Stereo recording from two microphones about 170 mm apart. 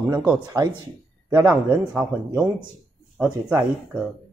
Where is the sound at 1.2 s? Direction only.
10° right (ahead or behind).